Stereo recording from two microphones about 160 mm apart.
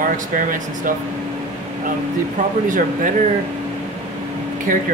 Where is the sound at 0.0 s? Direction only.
55° right (ahead or behind).